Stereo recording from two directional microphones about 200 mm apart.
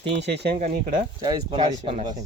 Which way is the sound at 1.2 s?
20° right (ahead or behind).